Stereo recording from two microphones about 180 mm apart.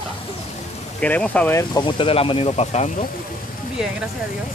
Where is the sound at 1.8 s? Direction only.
30° left (ahead or behind).